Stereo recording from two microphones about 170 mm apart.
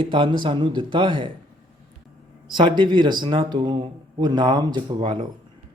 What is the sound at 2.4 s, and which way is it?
Speech, 25° right (ahead or behind).